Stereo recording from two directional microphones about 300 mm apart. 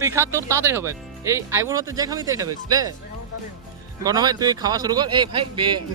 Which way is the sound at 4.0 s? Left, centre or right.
Centre.